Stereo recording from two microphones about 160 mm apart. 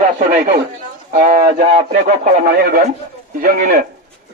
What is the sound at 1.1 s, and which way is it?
Speech, 55° right (ahead or behind).